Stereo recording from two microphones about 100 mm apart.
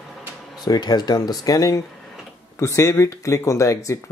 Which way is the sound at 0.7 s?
40° left (ahead or behind).